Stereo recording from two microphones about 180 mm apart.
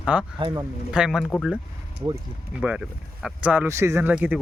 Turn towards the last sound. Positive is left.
turn(degrees=-10)  # may be behind; listen again after turning